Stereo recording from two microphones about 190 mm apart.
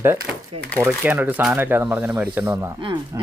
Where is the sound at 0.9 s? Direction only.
10° right (ahead or behind).